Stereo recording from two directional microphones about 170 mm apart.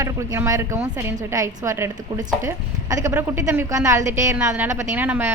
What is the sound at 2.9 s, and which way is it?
A woman's voice, 15° right (ahead or behind).